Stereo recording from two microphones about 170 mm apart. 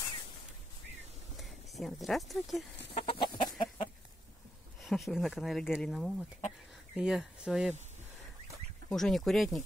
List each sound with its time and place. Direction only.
1.3 s speech: centre (ahead or behind)
2.9 s chicken: 35° left (ahead or behind)
4.8 s speech: centre (ahead or behind)
8.8 s speech: centre (ahead or behind)